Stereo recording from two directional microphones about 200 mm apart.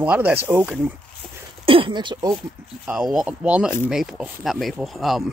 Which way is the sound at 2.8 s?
5° right (ahead or behind).